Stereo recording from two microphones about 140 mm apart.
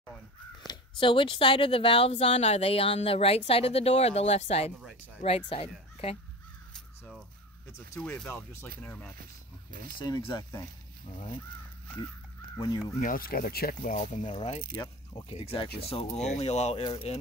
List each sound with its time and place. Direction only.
0.7 s speech: 35° left (ahead or behind)
8.0 s speech: 5° left (ahead or behind)
9.9 s speech: 35° left (ahead or behind)
12.5 s speech: 25° left (ahead or behind)
13.0 s speech: 90° left; by 14.6 s 50° left (ahead or behind)
14.7 s speech: 40° left (ahead or behind)